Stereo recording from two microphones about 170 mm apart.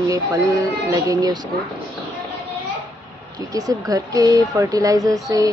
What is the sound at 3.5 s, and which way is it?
Speech, 20° right (ahead or behind).